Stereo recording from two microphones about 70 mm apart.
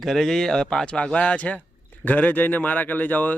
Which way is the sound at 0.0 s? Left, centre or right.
Centre.